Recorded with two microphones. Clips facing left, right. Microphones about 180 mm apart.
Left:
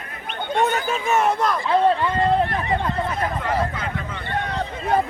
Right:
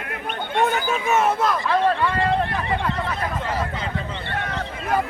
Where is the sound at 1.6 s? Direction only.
25° left (ahead or behind).